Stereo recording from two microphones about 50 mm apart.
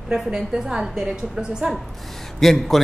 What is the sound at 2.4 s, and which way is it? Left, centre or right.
Speech, centre.